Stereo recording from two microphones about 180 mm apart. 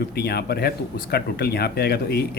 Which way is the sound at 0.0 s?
60° left (ahead or behind).